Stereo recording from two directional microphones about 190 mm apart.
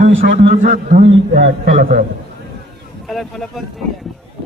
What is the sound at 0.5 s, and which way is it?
Speech, 45° right (ahead or behind).